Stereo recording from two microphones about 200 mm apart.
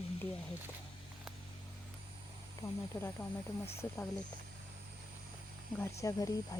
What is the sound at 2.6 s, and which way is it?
Speech, 10° left (ahead or behind).